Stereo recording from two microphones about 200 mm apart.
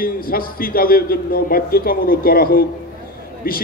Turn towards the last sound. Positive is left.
turn(degrees=45)  # may be behind; listen again after turning